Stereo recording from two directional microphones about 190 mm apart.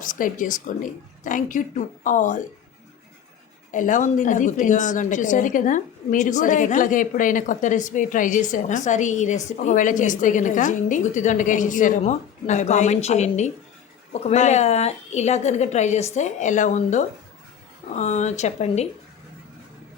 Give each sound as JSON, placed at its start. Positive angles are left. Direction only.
{"t": 0.0, "sound": "speech", "side_deg": 45}
{"t": 3.7, "sound": "a woman's voice", "side_deg": 40}